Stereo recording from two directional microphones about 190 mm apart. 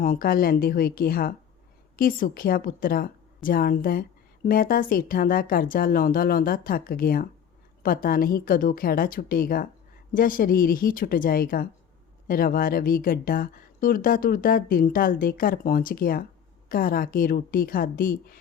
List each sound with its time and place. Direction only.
0.0 s speech: 45° left (ahead or behind)